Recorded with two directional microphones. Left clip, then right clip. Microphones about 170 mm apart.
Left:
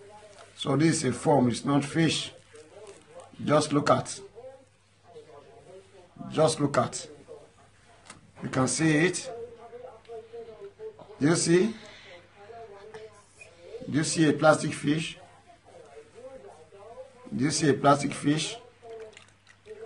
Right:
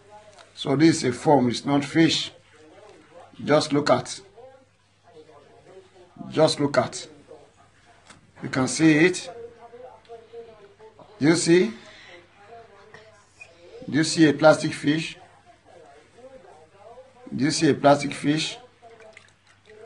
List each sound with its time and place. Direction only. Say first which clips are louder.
0.6 s a man's voice: right 6 dB; 20° right (ahead or behind)
3.4 s a man's voice: right 3 dB; 20° right (ahead or behind)
6.2 s a man's voice: right 4 dB; 20° right (ahead or behind)
8.5 s a man's voice: right 6 dB; 20° right (ahead or behind)
11.1 s a man's voice: right 5 dB; 20° right (ahead or behind)
11.7 s a sound: right 1 dB; 5° right (ahead or behind)
13.9 s a man's voice: right 6 dB; 20° right (ahead or behind)
17.4 s a man's voice: right 4 dB; 20° right (ahead or behind)